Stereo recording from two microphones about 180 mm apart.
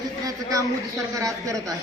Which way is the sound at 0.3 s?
20° right (ahead or behind).